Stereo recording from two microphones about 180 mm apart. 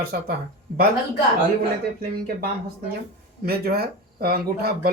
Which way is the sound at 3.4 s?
60° right (ahead or behind).